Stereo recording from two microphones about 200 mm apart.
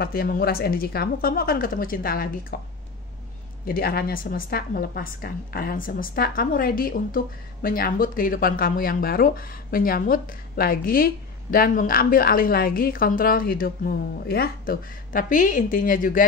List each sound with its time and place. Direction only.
0.0 s a woman's voice: 50° left (ahead or behind)